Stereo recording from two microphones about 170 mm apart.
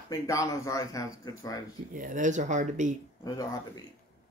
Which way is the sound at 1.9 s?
50° right (ahead or behind).